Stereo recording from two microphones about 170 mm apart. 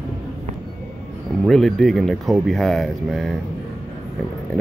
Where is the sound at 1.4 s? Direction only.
Centre (ahead or behind).